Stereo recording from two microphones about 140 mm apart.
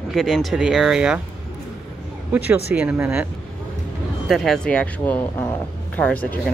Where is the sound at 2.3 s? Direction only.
10° right (ahead or behind).